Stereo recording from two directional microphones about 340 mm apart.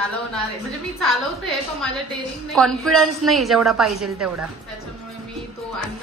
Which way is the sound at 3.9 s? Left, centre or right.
Right.